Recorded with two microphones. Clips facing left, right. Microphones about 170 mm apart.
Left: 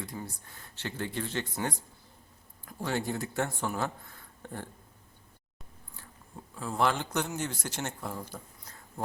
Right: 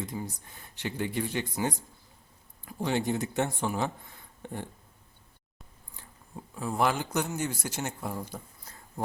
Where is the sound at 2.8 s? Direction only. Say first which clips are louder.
Right 4 dB; 20° right (ahead or behind).